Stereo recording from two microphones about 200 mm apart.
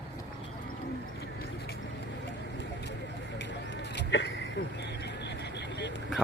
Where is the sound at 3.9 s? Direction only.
65° left (ahead or behind).